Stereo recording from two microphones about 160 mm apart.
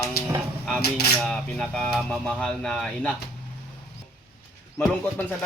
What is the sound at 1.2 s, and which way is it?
Speech, 5° left (ahead or behind).